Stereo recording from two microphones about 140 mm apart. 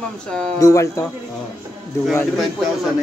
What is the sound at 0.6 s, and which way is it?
Speech, 25° left (ahead or behind).